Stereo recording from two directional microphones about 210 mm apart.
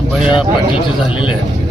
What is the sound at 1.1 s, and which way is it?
Speech, 25° left (ahead or behind).